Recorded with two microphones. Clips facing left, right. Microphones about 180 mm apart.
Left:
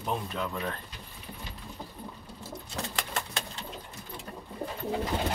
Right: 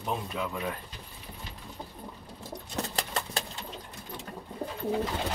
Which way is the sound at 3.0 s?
35° right (ahead or behind).